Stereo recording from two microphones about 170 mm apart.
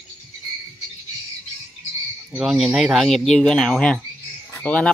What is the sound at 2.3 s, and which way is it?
Speech, centre (ahead or behind).